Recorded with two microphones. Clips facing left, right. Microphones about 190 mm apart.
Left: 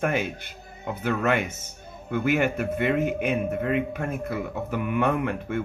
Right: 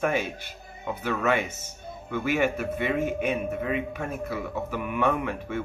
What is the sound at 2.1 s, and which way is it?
Speech, 55° left (ahead or behind).